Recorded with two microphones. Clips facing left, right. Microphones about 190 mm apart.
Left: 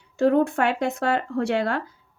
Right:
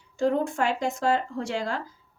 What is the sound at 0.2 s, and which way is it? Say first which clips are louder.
Speech: left 5 dB; 60° left (ahead or behind).